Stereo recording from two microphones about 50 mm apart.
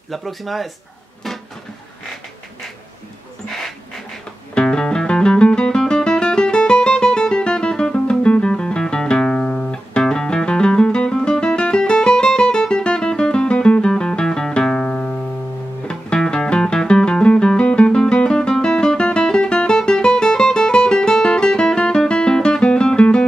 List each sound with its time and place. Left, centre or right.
0.1 s speech: centre
3.4 s dog: centre
4.6 s music: centre